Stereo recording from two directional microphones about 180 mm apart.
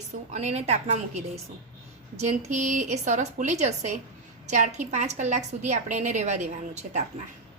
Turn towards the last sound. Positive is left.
turn(degrees=-40)  # may be behind; listen again after turning